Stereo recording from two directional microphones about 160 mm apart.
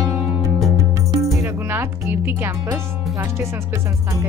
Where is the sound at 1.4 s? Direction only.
15° right (ahead or behind).